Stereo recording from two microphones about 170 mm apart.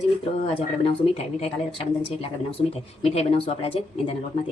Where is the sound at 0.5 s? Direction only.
35° left (ahead or behind).